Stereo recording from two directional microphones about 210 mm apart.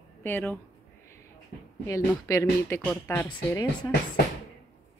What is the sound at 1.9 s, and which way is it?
Speech, 15° left (ahead or behind).